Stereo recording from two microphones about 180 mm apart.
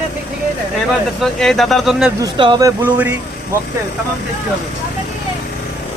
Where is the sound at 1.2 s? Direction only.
Centre (ahead or behind).